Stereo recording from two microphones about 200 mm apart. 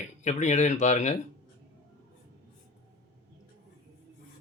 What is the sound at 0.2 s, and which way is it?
Speech, 35° left (ahead or behind).